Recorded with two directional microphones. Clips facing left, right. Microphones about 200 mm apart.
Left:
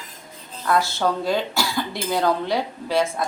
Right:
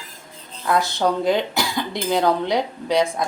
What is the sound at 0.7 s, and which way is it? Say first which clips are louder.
Speech: right 1 dB; 15° right (ahead or behind).